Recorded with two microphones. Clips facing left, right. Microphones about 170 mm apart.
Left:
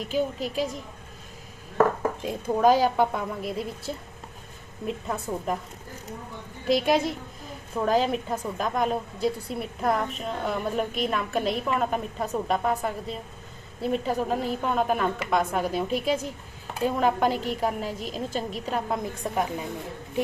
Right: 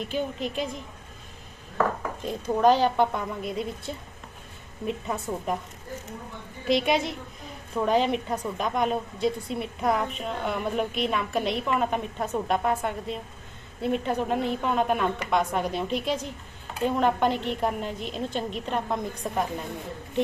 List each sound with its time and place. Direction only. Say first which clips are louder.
0.0 s a woman's voice: left 2 dB; centre (ahead or behind)
2.2 s a woman's voice: even; 10° left (ahead or behind)
6.7 s a woman's voice: left 1 dB; centre (ahead or behind)
17.3 s a woman's voice: even; 40° left (ahead or behind)
17.6 s a woman's voice: even; 5° left (ahead or behind)